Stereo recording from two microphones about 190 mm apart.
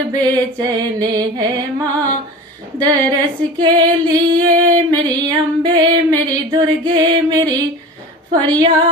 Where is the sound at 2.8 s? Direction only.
25° right (ahead or behind).